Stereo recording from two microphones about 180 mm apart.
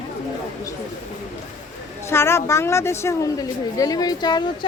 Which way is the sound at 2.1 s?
15° left (ahead or behind).